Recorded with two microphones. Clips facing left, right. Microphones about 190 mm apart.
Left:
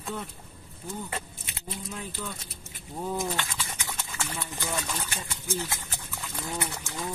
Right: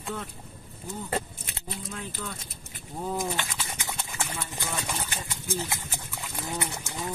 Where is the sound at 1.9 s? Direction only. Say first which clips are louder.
Even; 15° left (ahead or behind).